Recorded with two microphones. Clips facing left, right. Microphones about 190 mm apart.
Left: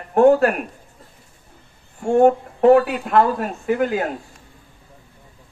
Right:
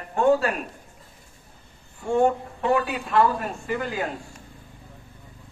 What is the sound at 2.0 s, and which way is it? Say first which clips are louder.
Speech: left 6 dB; 60° left (ahead or behind).